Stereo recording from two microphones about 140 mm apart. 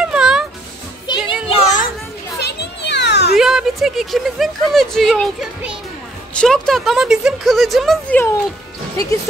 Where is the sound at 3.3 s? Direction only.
5° right (ahead or behind).